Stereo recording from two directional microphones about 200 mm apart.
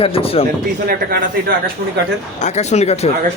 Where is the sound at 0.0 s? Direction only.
30° left (ahead or behind).